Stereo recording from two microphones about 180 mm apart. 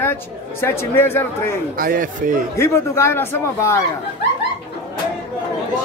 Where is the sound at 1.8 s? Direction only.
50° right (ahead or behind).